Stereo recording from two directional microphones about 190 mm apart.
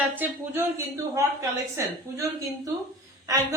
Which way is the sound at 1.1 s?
15° right (ahead or behind).